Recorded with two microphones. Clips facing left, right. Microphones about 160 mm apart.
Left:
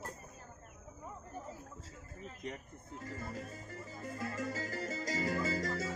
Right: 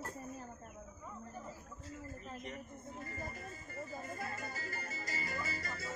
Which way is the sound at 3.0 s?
90° left.